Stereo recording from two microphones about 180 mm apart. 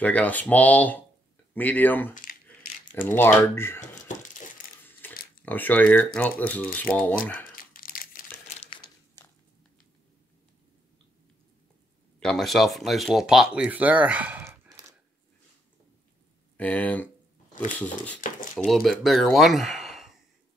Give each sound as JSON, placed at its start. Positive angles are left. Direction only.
{"t": 0.0, "sound": "speech", "side_deg": 10}
{"t": 3.8, "sound": "a sound", "side_deg": 45}
{"t": 5.0, "sound": "a sound", "side_deg": 10}
{"t": 5.4, "sound": "speech", "side_deg": 10}
{"t": 7.5, "sound": "crumpling", "side_deg": 50}
{"t": 8.5, "sound": "crumpling", "side_deg": 35}
{"t": 8.8, "sound": "a sound", "side_deg": 20}
{"t": 12.2, "sound": "speech", "side_deg": 0}
{"t": 16.5, "sound": "speech", "side_deg": 10}
{"t": 18.6, "sound": "speech", "side_deg": 0}